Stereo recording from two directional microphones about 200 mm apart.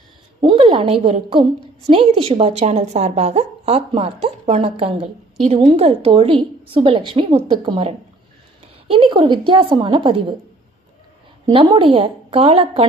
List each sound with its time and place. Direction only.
0.4 s a woman's voice: 25° right (ahead or behind)
11.4 s a woman's voice: 25° right (ahead or behind)